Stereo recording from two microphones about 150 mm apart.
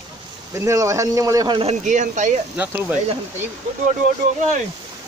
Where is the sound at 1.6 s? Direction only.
55° right (ahead or behind).